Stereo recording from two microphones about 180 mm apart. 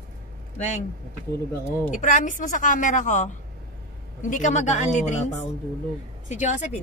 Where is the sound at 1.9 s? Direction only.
45° left (ahead or behind).